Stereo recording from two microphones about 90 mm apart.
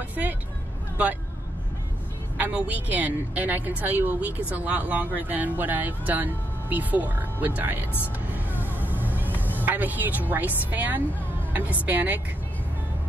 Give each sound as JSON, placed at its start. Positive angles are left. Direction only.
{"t": 0.1, "sound": "vehicle", "side_deg": -20}
{"t": 2.3, "sound": "a woman's voice", "side_deg": -20}
{"t": 8.3, "sound": "vehicle", "side_deg": -20}
{"t": 11.5, "sound": "a woman's voice", "side_deg": -20}